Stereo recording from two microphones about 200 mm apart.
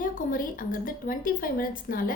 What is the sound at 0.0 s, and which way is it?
A woman's voice, 45° left (ahead or behind).